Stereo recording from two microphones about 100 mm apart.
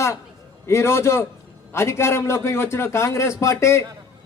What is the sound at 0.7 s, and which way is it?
A man's voice, 25° left (ahead or behind).